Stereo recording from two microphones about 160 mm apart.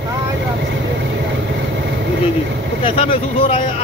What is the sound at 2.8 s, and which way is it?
Speech, 35° left (ahead or behind).